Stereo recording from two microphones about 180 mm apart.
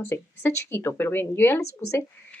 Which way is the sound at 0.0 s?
15° left (ahead or behind).